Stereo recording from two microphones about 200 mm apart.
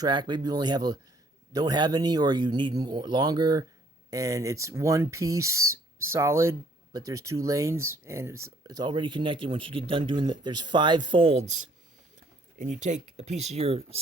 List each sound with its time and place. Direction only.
0.0 s speech: 20° right (ahead or behind)